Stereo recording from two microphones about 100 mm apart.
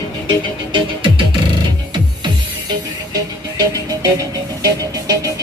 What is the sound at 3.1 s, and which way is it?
Music, 35° right (ahead or behind).